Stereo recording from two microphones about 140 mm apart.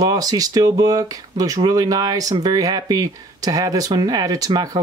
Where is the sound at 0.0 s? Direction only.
25° right (ahead or behind).